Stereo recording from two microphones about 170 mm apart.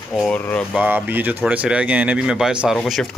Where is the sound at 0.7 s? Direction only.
10° right (ahead or behind).